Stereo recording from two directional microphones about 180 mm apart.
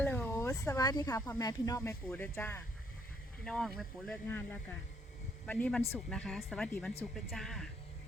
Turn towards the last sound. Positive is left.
turn(degrees=0)  # may be behind; listen again after turning